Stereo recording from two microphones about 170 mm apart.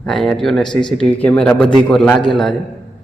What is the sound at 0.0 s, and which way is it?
Speech, 5° left (ahead or behind).